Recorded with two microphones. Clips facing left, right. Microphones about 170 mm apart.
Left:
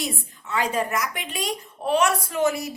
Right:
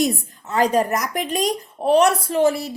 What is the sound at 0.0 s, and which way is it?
A woman's voice, 40° right (ahead or behind).